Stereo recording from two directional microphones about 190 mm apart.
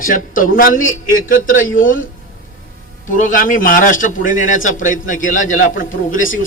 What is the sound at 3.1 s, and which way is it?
A man's voice, 45° left (ahead or behind).